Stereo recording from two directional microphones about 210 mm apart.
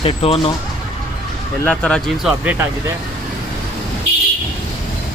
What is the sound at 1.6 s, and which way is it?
Speech, 5° left (ahead or behind).